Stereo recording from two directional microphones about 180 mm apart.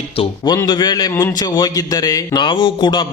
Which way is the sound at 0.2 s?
20° left (ahead or behind).